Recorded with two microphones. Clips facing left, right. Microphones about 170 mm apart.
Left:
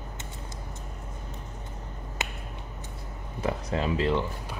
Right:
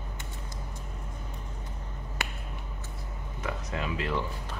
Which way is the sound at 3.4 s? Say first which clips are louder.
Left 6 dB; 30° left (ahead or behind).